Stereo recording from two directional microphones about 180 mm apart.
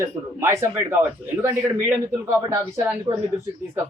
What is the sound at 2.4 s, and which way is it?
Speech, 20° right (ahead or behind).